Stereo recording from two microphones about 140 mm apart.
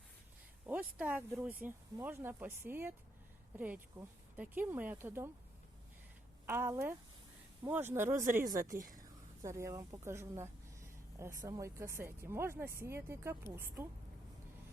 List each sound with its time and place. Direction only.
0.9 s speech: 10° right (ahead or behind)
6.4 s speech: 15° right (ahead or behind)
8.5 s speech: 70° right (ahead or behind)
9.0 s a sound: 20° right (ahead or behind)
11.3 s speech: 25° right (ahead or behind)